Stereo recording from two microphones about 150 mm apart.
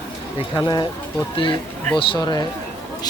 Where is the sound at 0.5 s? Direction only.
30° left (ahead or behind).